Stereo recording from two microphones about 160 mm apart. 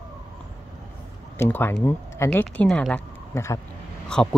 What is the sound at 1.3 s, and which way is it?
Speech, 15° left (ahead or behind).